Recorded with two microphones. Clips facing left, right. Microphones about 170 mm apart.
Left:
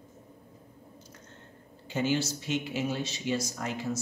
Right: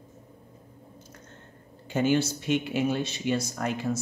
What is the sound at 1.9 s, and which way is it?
A man's voice, 55° right (ahead or behind).